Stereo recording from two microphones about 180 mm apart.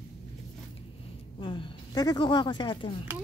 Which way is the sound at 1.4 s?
25° left (ahead or behind).